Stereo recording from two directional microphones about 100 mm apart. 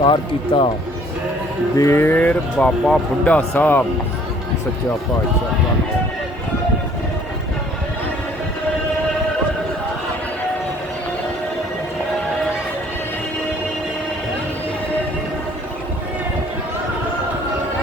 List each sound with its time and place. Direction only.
0.0 s speech: 55° left (ahead or behind)
1.8 s speech: 25° left (ahead or behind)